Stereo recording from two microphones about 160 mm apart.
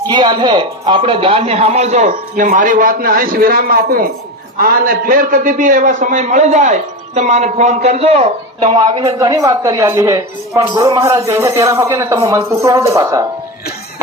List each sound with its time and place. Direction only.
0.0 s a man's voice: 25° right (ahead or behind)
9.1 s speech: 20° right (ahead or behind)
11.3 s speech: 15° right (ahead or behind)